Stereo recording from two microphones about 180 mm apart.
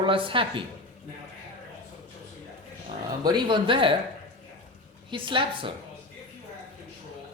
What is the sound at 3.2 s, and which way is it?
Speech, 25° right (ahead or behind).